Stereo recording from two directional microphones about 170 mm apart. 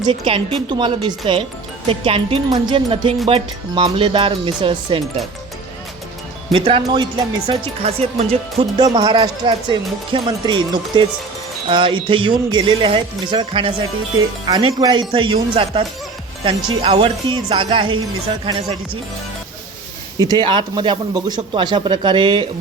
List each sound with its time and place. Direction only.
0.0 s speech: 30° right (ahead or behind)
6.5 s speech: 30° right (ahead or behind)
20.1 s speech: 25° right (ahead or behind)